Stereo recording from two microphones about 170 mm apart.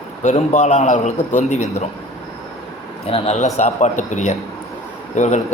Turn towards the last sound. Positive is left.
turn(degrees=45)  # may be behind; listen again after turning